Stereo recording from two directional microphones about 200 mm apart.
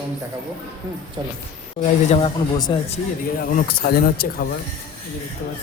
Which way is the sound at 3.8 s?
50° left (ahead or behind).